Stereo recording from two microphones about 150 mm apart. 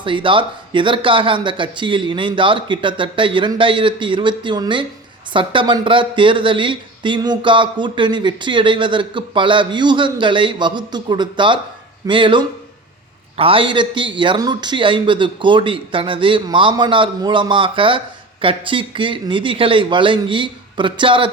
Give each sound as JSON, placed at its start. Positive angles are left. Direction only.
{"t": 0.0, "sound": "speech", "side_deg": -35}